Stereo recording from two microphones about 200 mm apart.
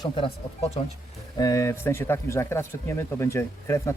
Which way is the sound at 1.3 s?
15° left (ahead or behind).